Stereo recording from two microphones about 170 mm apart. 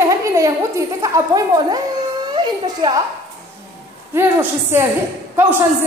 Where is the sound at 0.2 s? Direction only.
20° right (ahead or behind).